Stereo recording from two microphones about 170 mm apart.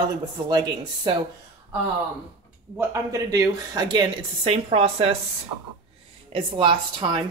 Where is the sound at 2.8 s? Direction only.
20° right (ahead or behind); by 5.1 s 35° right (ahead or behind).